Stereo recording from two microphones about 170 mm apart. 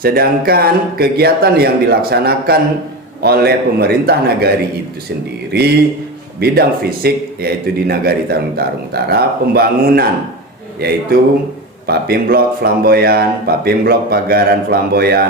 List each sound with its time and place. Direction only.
0.0 s a man's voice: 60° right (ahead or behind)
6.4 s a man's voice: 65° right (ahead or behind)